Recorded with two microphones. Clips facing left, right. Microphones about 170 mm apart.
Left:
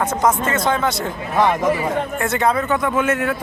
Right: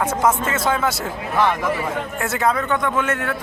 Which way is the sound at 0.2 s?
5° right (ahead or behind).